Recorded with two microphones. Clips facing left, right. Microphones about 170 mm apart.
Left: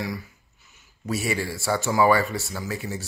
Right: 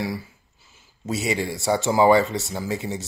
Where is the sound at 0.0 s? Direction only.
30° right (ahead or behind).